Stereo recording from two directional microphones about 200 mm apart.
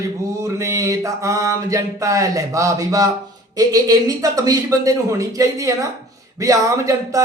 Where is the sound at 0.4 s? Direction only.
15° right (ahead or behind).